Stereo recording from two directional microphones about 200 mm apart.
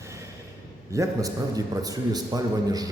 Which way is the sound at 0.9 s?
15° right (ahead or behind).